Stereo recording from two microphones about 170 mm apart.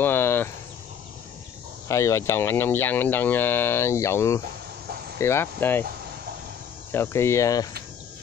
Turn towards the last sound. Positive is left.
turn(degrees=20)  # may be behind; listen again after turning